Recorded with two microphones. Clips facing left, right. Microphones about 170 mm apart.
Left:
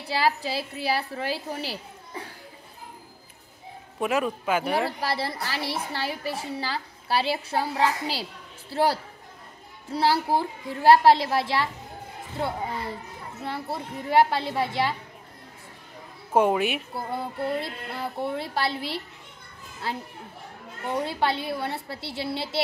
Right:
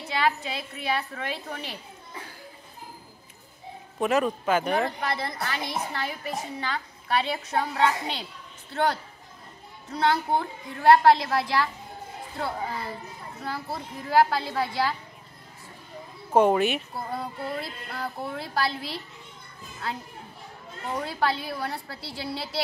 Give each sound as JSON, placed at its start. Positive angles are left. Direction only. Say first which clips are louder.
{"t": 0.0, "sound": "a woman's voice", "louder": "left 1 dB", "side_deg": 35}
{"t": 4.0, "sound": "speech", "louder": "right 2 dB", "side_deg": 5}
{"t": 5.0, "sound": "a woman's voice", "louder": "left 1 dB", "side_deg": 30}
{"t": 12.4, "sound": "children playing", "louder": "left 2 dB", "side_deg": 25}
{"t": 13.7, "sound": "a child's voice", "louder": "left 1 dB", "side_deg": 25}
{"t": 16.3, "sound": "speech", "louder": "right 1 dB", "side_deg": 5}
{"t": 17.4, "sound": "a child's voice", "louder": "left 4 dB", "side_deg": 25}
{"t": 17.6, "sound": "music", "louder": "left 2 dB", "side_deg": 0}
{"t": 20.9, "sound": "a child's voice", "louder": "left 1 dB", "side_deg": 25}